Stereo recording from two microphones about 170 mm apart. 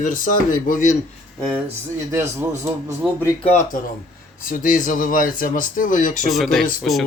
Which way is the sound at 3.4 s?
40° left (ahead or behind).